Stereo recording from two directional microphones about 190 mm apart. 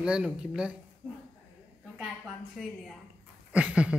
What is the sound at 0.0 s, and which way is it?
Speech, 5° right (ahead or behind).